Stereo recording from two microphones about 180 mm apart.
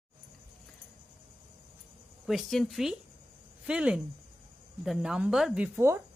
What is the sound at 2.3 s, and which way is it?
A woman's voice, centre (ahead or behind).